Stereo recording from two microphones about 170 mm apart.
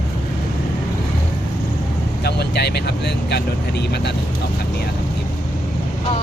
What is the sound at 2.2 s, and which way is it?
Vehicle, 75° left (ahead or behind).